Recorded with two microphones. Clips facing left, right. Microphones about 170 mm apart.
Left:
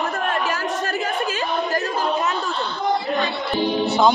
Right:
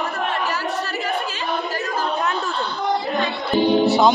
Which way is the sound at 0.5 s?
50° left (ahead or behind).